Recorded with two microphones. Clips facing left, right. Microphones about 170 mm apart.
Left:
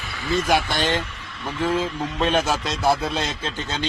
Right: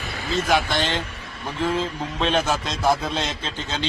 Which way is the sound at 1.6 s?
10° left (ahead or behind).